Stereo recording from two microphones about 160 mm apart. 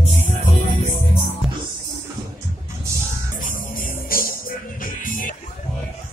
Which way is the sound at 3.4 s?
60° left (ahead or behind).